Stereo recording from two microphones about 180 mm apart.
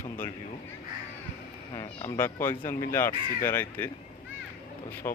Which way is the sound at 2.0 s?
10° left (ahead or behind).